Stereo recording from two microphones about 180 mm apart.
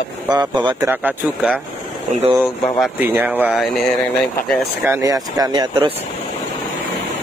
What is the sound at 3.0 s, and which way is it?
Speech, 10° right (ahead or behind).